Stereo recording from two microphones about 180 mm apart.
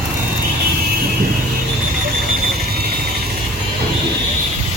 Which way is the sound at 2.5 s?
60° right (ahead or behind).